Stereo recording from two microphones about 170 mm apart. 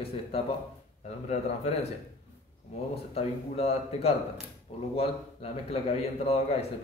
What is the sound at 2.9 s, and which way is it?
A man's voice, 35° left (ahead or behind).